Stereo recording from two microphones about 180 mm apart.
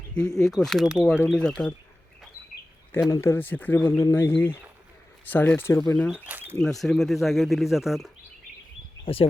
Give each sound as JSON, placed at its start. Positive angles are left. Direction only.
{"t": 0.1, "sound": "speech", "side_deg": 5}
{"t": 3.1, "sound": "speech", "side_deg": 15}
{"t": 6.0, "sound": "speech", "side_deg": 5}
{"t": 6.2, "sound": "speech", "side_deg": -10}
{"t": 6.6, "sound": "speech", "side_deg": 0}
{"t": 9.1, "sound": "speech", "side_deg": 30}